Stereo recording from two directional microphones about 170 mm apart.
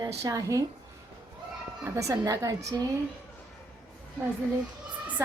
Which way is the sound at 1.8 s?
20° right (ahead or behind).